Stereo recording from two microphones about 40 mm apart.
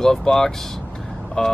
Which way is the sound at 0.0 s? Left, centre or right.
Centre.